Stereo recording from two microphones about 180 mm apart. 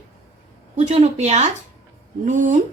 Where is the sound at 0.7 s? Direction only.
40° right (ahead or behind).